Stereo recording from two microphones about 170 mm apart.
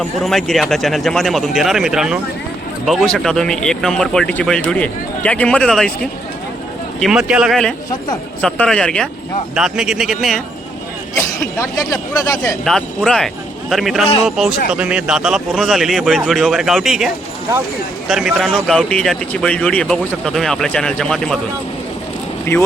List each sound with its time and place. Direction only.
0.2 s speech: centre (ahead or behind)
11.2 s speech: 20° left (ahead or behind)
12.6 s a man's voice: centre (ahead or behind)
18.1 s speech: centre (ahead or behind)
22.5 s speech: 15° left (ahead or behind)